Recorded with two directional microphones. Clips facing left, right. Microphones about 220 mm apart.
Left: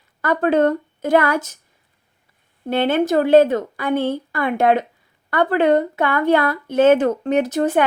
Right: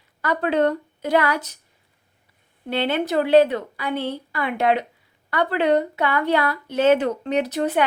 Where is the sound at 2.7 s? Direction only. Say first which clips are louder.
Left 5 dB; 50° left (ahead or behind).